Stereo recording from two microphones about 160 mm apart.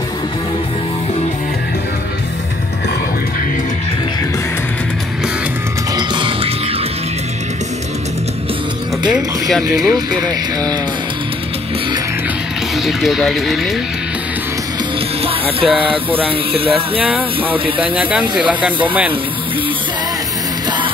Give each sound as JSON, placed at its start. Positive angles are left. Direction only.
{"t": 5.9, "sound": "music", "side_deg": -30}
{"t": 9.1, "sound": "speech", "side_deg": 0}
{"t": 9.8, "sound": "speech", "side_deg": -25}
{"t": 12.7, "sound": "speech", "side_deg": 0}
{"t": 15.2, "sound": "music", "side_deg": -35}
{"t": 17.0, "sound": "speech", "side_deg": -10}
{"t": 17.6, "sound": "music", "side_deg": -35}
{"t": 18.3, "sound": "speech", "side_deg": -10}